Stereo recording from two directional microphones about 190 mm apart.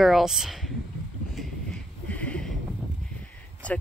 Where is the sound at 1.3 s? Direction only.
5° left (ahead or behind).